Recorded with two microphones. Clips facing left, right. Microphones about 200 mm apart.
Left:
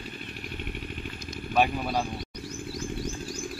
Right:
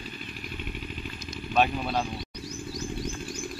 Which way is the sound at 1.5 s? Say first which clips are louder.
Even; 10° left (ahead or behind).